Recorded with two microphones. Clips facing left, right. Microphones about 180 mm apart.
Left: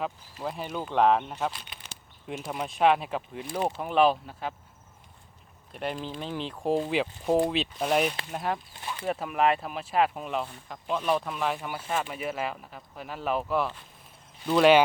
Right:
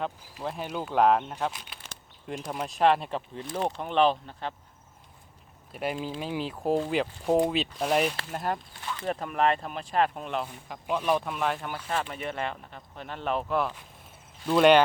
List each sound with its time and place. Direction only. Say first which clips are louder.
0.0 s speech: even; centre (ahead or behind)
5.7 s speech: right 2 dB; 5° right (ahead or behind)
8.8 s a sound: right 1 dB; 15° left (ahead or behind)
9.0 s speech: left 1 dB; 5° left (ahead or behind)